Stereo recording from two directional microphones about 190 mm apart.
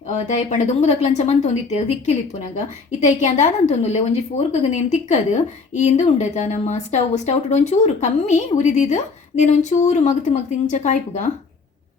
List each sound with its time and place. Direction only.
0.1 s a woman's voice: 40° left (ahead or behind)